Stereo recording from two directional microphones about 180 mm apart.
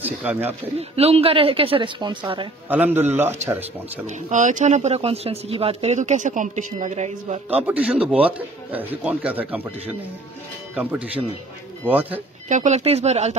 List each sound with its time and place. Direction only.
0.0 s speech: 10° right (ahead or behind)
0.7 s speech: 35° right (ahead or behind)
2.7 s a man's voice: 10° right (ahead or behind)
4.3 s speech: 45° right (ahead or behind)
7.4 s a man's voice: 10° right (ahead or behind)
12.4 s speech: 45° right (ahead or behind)